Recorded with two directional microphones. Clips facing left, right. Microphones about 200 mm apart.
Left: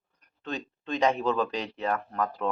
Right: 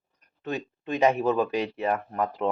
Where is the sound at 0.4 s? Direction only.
10° right (ahead or behind).